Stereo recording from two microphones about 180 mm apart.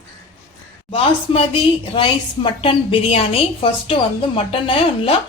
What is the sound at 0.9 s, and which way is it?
A woman's voice, 30° left (ahead or behind).